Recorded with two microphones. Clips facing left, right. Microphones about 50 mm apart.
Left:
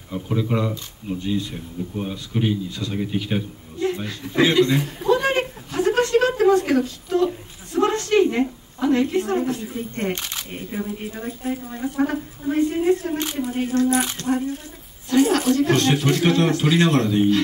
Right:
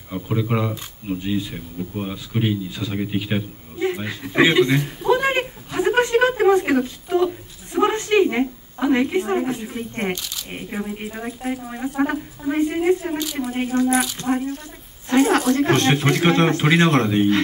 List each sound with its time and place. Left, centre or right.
0.1 s speech: centre
4.8 s a sound: centre
7.7 s a woman's voice: centre
10.1 s speech: left
11.1 s speech: right
13.7 s speech: right
15.0 s speech: right